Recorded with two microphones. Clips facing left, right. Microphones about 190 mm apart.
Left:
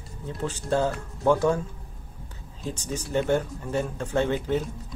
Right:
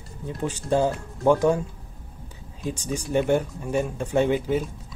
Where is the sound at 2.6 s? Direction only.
15° right (ahead or behind).